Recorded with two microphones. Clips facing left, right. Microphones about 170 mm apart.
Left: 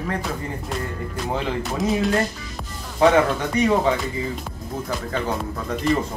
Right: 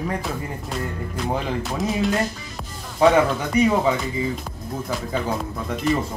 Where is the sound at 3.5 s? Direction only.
10° right (ahead or behind).